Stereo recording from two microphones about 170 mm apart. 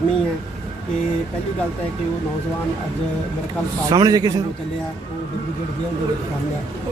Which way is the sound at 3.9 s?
25° right (ahead or behind).